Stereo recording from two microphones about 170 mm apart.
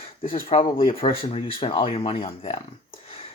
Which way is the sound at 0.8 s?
35° left (ahead or behind).